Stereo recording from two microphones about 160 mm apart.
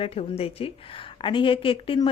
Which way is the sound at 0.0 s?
35° left (ahead or behind).